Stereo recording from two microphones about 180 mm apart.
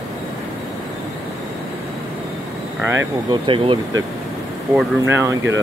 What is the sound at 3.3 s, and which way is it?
Speech, 30° right (ahead or behind).